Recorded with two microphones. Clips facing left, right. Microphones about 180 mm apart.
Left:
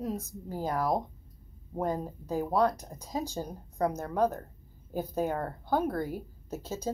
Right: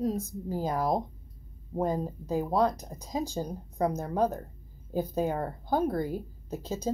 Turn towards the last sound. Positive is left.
turn(degrees=-15)  # may be behind; listen again after turning